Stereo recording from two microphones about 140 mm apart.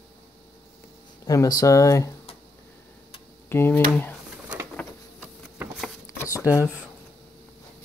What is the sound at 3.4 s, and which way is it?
Speech, 15° left (ahead or behind).